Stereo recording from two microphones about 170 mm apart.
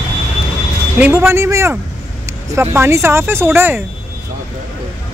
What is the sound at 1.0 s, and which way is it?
Speech, 10° right (ahead or behind).